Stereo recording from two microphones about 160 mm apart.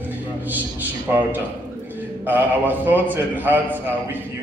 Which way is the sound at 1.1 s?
10° right (ahead or behind).